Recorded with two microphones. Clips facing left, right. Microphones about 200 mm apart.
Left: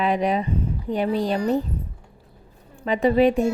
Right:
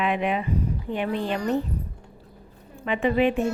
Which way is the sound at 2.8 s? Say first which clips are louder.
Left 4 dB; 35° left (ahead or behind).